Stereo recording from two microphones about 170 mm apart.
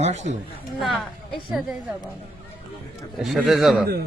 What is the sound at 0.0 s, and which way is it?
Speech, 40° right (ahead or behind).